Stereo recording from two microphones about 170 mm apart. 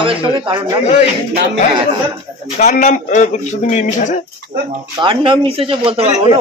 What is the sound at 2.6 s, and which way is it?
Speech, 45° left (ahead or behind).